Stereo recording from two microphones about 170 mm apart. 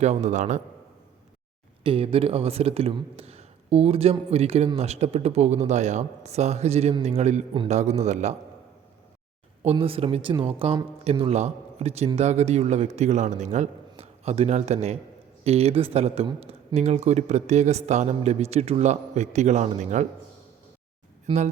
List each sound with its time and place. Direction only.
0.0 s a man's voice: 40° right (ahead or behind)
1.8 s a man's voice: 30° right (ahead or behind)
9.6 s speech: 35° right (ahead or behind)
21.2 s speech: 40° right (ahead or behind)